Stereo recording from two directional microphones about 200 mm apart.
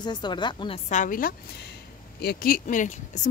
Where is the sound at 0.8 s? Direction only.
40° left (ahead or behind).